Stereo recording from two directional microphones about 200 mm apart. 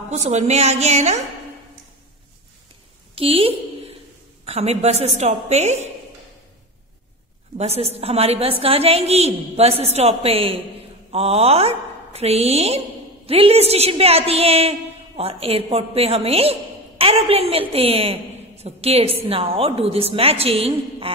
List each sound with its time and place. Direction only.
0.1 s a woman's voice: 35° right (ahead or behind)
3.2 s a sound: 30° right (ahead or behind)
4.5 s a woman's voice: 30° right (ahead or behind)
7.5 s a woman's voice: 30° right (ahead or behind)